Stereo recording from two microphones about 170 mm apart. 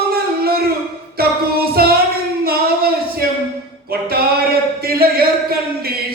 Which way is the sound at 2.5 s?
65° right (ahead or behind).